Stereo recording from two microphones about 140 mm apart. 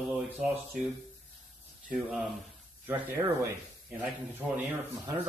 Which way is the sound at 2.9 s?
15° right (ahead or behind).